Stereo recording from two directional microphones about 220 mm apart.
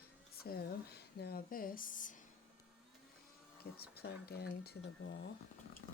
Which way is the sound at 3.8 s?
45° left (ahead or behind).